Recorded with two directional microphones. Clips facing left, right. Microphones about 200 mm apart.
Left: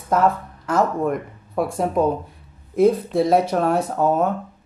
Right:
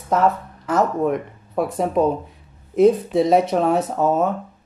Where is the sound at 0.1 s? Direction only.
5° right (ahead or behind).